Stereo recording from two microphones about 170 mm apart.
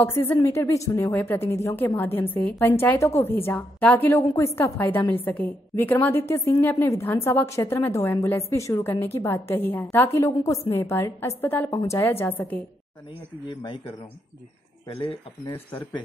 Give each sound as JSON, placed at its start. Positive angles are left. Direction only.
{"t": 0.0, "sound": "speech", "side_deg": 10}
{"t": 13.6, "sound": "speech", "side_deg": 30}
{"t": 15.0, "sound": "speech", "side_deg": 30}